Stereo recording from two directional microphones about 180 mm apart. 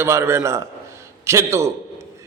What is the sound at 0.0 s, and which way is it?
A man's voice, 15° right (ahead or behind).